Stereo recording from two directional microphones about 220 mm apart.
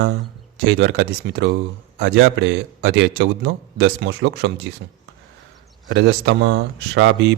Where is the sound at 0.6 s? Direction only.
55° right (ahead or behind).